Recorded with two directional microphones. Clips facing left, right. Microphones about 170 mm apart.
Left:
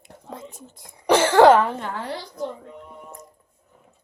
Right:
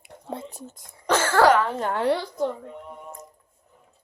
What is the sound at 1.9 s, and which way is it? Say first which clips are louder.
Speech: right 8 dB; 65° right (ahead or behind).